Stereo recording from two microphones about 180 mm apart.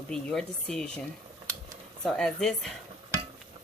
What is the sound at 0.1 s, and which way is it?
Speech, 5° left (ahead or behind).